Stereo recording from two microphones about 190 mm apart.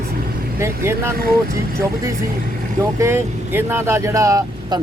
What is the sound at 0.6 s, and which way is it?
Speech, 15° right (ahead or behind).